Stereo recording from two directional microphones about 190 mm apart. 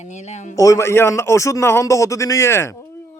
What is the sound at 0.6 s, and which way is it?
A man's voice, 15° left (ahead or behind).